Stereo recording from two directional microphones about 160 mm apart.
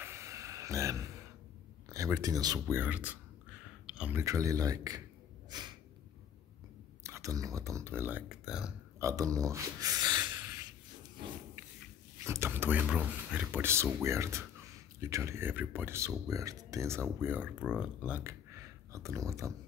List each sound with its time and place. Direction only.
0.0 s a sound: 15° right (ahead or behind)
1.9 s speech: 20° right (ahead or behind)
2.8 s speech: 10° right (ahead or behind)
3.8 s a sound: 5° right (ahead or behind)
4.2 s speech: 20° right (ahead or behind)
5.5 s snort: 25° right (ahead or behind)
7.0 s speech: 20° right (ahead or behind)
8.3 s speech: 5° right (ahead or behind)
9.0 s speech: 20° right (ahead or behind)
12.2 s speech: 15° right (ahead or behind)